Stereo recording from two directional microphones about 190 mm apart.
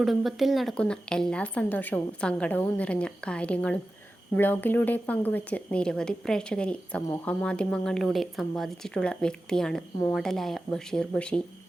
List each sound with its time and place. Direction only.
0.0 s a woman's voice: centre (ahead or behind)